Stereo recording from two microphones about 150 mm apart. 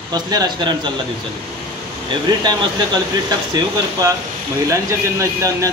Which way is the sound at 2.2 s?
30° right (ahead or behind).